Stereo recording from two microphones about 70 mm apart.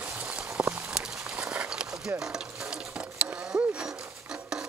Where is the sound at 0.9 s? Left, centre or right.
Centre.